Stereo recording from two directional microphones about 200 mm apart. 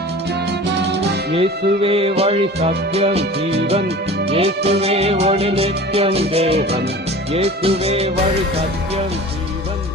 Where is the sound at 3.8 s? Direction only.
55° right (ahead or behind).